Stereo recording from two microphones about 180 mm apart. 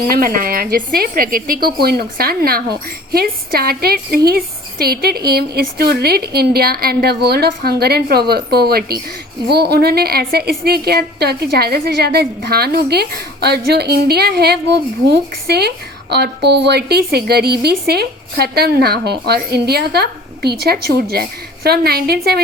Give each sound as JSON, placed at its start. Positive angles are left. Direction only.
{"t": 0.1, "sound": "a woman's voice", "side_deg": -55}